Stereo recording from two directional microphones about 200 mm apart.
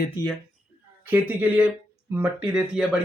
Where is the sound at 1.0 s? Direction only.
10° right (ahead or behind).